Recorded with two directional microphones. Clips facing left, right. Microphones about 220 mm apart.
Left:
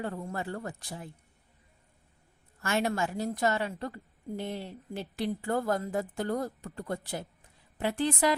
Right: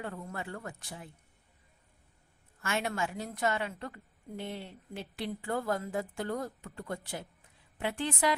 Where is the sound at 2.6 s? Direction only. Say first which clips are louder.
Left 4 dB; 40° left (ahead or behind).